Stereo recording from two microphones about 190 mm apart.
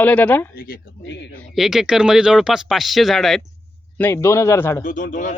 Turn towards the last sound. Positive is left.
turn(degrees=45)  # may be behind; listen again after turning